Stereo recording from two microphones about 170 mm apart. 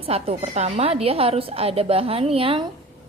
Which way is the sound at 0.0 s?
35° right (ahead or behind).